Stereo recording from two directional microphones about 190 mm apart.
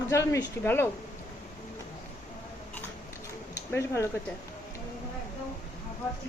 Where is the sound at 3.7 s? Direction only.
15° left (ahead or behind).